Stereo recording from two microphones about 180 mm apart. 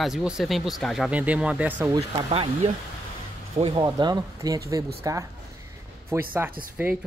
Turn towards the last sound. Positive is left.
turn(degrees=-10)  # may be behind; listen again after turning